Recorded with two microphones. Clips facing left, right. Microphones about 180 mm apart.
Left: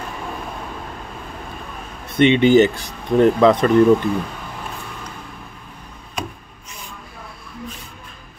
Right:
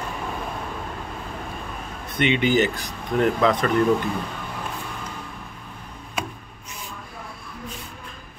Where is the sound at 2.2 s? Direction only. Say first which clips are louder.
Left 8 dB; 20° left (ahead or behind).